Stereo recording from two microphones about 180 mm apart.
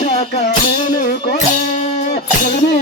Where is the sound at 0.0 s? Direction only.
35° left (ahead or behind).